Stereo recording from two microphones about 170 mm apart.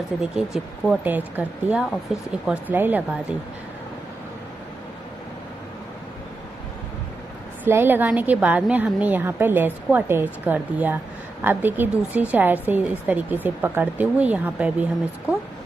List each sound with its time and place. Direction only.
0.2 s a woman's voice: centre (ahead or behind)
7.6 s a woman's voice: 10° right (ahead or behind)